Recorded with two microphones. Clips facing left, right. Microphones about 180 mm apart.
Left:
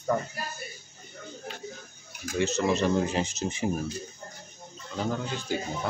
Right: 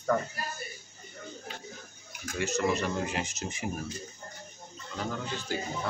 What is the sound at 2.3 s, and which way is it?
Speech, 25° left (ahead or behind).